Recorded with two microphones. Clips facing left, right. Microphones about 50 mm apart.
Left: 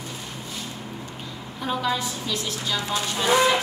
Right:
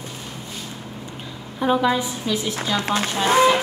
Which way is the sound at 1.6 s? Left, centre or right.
Centre.